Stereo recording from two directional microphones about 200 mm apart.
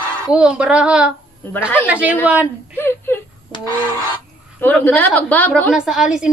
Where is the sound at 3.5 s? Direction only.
25° left (ahead or behind).